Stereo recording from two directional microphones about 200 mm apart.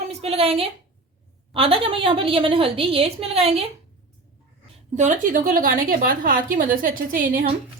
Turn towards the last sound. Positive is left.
turn(degrees=-45)  # may be behind; listen again after turning